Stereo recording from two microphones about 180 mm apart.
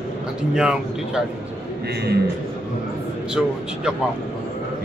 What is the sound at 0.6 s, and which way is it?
Speech, 5° right (ahead or behind).